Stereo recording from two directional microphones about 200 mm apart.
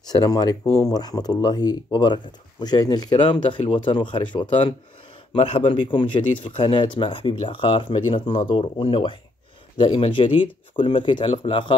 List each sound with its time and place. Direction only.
0.0 s speech: 20° left (ahead or behind)